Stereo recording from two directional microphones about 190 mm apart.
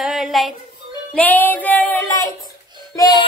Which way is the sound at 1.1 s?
10° left (ahead or behind).